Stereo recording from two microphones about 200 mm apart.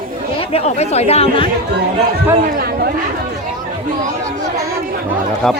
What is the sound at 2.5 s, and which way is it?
Speech, 50° right (ahead or behind).